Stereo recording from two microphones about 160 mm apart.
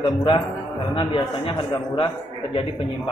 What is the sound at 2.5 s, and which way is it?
Mantra, 30° left (ahead or behind).